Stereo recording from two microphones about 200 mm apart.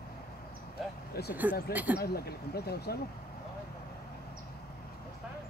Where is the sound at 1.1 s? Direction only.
55° left (ahead or behind).